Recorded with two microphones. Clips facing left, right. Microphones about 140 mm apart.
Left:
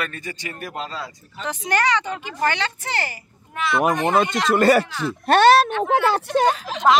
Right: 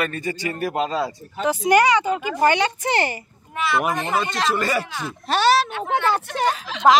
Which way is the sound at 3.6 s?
5° right (ahead or behind).